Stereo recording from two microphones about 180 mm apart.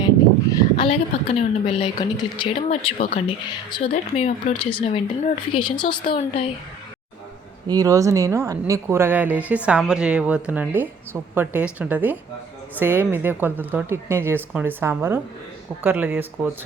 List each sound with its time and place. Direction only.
0.8 s a woman's voice: 35° left (ahead or behind)
3.9 s a woman's voice: 40° left (ahead or behind)
7.7 s a woman's voice: 20° right (ahead or behind)